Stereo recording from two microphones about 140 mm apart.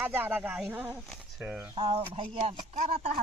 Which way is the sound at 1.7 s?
40° right (ahead or behind).